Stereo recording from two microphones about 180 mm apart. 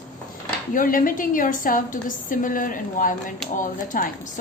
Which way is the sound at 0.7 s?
50° left (ahead or behind).